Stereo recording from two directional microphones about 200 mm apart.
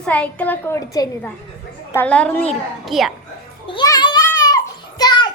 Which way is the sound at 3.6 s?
20° left (ahead or behind).